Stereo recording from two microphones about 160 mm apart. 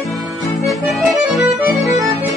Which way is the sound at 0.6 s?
Centre (ahead or behind).